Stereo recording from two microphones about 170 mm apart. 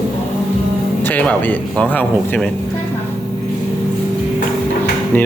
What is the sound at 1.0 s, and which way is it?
Speech, 10° left (ahead or behind).